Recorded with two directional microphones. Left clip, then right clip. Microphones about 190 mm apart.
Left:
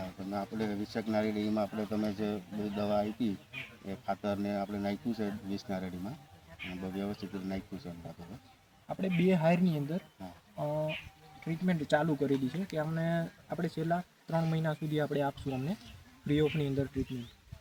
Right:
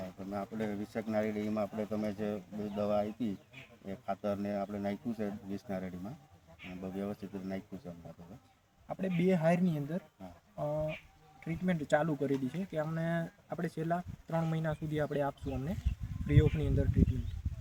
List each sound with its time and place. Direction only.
0.3 s speech: 15° right (ahead or behind)
8.9 s speech: centre (ahead or behind)